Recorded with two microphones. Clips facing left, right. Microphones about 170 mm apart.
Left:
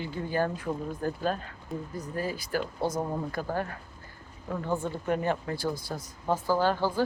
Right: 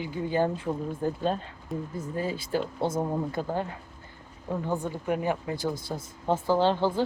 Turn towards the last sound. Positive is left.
turn(degrees=-25)  # may be behind; listen again after turning